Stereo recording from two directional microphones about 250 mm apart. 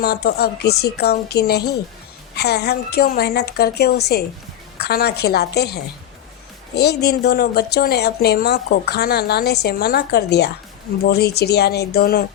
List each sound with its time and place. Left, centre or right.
0.0 s a woman's voice: left